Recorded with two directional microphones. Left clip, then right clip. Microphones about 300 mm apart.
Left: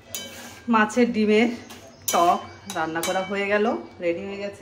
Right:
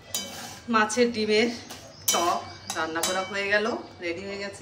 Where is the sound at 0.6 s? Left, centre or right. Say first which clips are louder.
Left 2 dB; centre.